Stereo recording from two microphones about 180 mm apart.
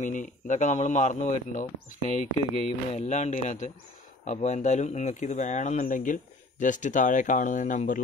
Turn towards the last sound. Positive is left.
turn(degrees=45)  # may be behind; listen again after turning